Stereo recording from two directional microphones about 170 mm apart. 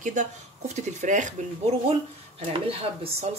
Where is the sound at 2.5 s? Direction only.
35° right (ahead or behind).